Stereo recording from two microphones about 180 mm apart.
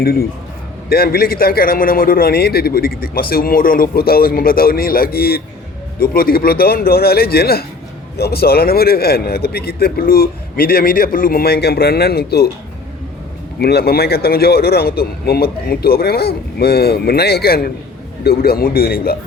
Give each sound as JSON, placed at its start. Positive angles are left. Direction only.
{"t": 0.0, "sound": "a man's voice", "side_deg": 55}
{"t": 13.6, "sound": "a man's voice", "side_deg": 65}